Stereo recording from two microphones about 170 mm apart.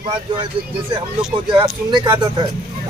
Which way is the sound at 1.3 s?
30° right (ahead or behind).